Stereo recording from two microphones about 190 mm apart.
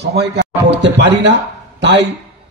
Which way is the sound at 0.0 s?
60° right (ahead or behind).